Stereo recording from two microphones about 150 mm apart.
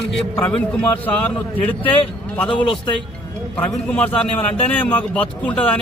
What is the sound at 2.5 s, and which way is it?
Speech, 35° left (ahead or behind).